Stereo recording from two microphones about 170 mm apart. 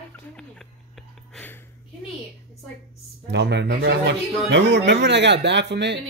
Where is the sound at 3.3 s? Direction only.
90° right.